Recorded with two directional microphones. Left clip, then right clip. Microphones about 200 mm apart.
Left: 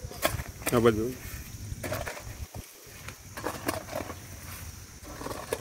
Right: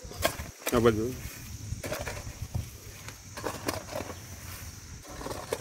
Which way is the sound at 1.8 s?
35° right (ahead or behind).